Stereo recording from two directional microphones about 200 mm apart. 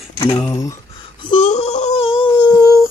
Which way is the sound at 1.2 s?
30° left (ahead or behind).